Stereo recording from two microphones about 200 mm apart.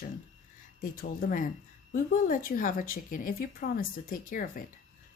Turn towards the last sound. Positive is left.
turn(degrees=45)  # may be behind; listen again after turning